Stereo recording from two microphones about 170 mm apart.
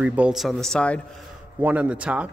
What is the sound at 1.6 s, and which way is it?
Speech, 10° right (ahead or behind).